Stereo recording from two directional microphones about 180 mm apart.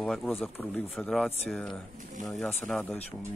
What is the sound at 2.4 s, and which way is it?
Speech, 5° left (ahead or behind).